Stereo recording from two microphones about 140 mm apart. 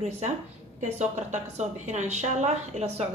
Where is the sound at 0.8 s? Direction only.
55° right (ahead or behind).